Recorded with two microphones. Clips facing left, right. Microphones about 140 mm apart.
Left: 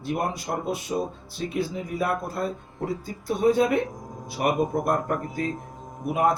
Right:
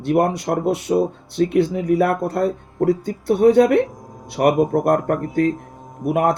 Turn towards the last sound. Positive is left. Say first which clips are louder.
# right 5 dB
turn(degrees=-65)  # may be behind; listen again after turning